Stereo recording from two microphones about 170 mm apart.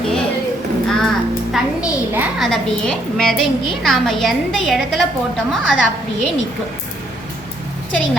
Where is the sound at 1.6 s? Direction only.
Centre (ahead or behind).